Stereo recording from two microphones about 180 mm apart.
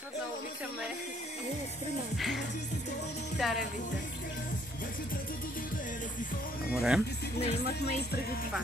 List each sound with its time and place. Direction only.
2.1 s speech: centre (ahead or behind)
6.7 s speech: 5° right (ahead or behind)
7.4 s speech: 40° left (ahead or behind)